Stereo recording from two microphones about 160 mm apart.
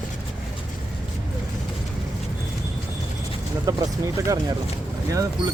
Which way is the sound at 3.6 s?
20° right (ahead or behind).